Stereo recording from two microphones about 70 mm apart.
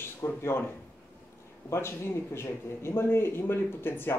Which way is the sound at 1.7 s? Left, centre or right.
Left.